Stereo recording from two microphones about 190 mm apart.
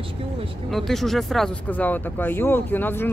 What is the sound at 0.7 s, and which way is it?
Speech, centre (ahead or behind).